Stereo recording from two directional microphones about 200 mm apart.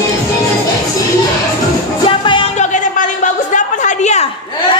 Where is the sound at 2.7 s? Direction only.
40° left (ahead or behind).